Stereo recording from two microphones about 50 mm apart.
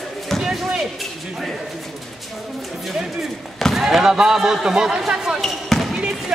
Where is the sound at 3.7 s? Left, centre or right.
Centre.